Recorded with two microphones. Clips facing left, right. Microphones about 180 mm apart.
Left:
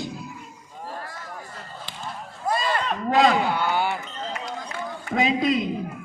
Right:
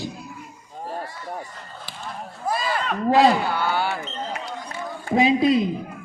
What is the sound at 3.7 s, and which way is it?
Basketball bounce, 20° left (ahead or behind).